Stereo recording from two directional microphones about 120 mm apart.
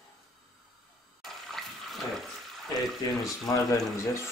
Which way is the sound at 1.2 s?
Centre (ahead or behind).